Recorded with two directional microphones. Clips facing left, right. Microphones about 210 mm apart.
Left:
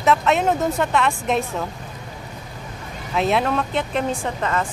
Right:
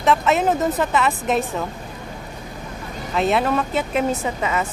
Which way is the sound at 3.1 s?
Centre (ahead or behind).